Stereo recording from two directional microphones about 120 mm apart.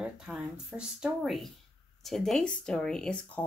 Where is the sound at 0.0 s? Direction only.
10° right (ahead or behind); by 3.4 s 5° left (ahead or behind).